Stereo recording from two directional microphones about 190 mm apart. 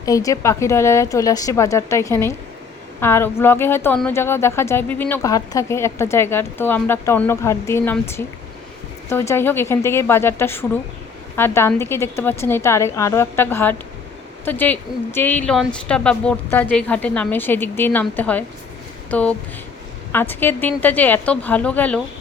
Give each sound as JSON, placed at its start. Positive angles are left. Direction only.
{"t": 0.0, "sound": "speech", "side_deg": 20}